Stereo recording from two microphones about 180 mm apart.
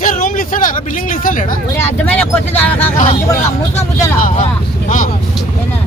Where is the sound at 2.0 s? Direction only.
10° left (ahead or behind).